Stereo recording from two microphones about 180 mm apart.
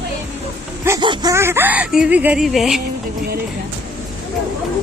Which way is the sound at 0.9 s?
25° right (ahead or behind).